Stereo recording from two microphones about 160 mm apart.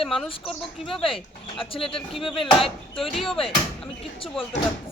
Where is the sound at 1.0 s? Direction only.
35° left (ahead or behind).